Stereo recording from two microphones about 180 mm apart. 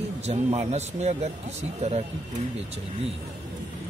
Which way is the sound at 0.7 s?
40° right (ahead or behind).